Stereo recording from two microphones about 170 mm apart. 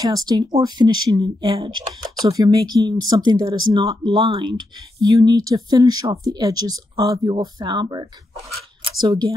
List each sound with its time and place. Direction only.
0.0 s speech: 20° right (ahead or behind)